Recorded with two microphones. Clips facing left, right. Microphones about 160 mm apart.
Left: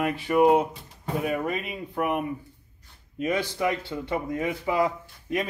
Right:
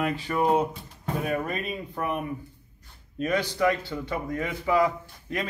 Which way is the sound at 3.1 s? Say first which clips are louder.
Even; 20° left (ahead or behind).